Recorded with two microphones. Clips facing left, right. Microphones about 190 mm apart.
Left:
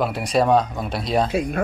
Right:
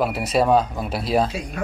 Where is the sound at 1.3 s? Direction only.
55° left (ahead or behind).